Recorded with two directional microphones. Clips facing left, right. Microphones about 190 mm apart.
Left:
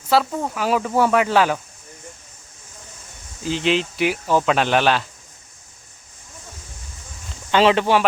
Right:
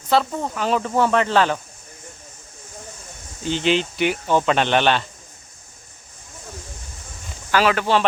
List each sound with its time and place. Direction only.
0.1 s speech: 5° left (ahead or behind)
3.4 s speech: centre (ahead or behind)
7.5 s speech: 25° left (ahead or behind)